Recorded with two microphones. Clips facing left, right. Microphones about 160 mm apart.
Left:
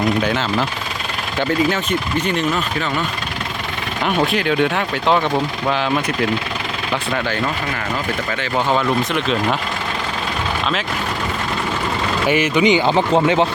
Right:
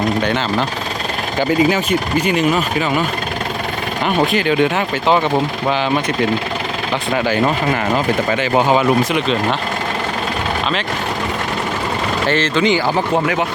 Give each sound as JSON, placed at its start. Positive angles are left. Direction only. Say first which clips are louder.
{"t": 0.2, "sound": "speech", "louder": "right 1 dB", "side_deg": 5}
{"t": 4.3, "sound": "speech", "louder": "right 2 dB", "side_deg": 0}
{"t": 8.4, "sound": "speech", "louder": "right 3 dB", "side_deg": -15}
{"t": 9.1, "sound": "speech", "louder": "right 2 dB", "side_deg": 0}
{"t": 12.3, "sound": "speech", "louder": "left 1 dB", "side_deg": 15}